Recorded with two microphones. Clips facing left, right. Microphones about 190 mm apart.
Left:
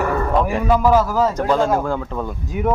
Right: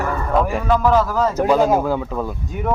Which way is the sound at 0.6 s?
10° left (ahead or behind).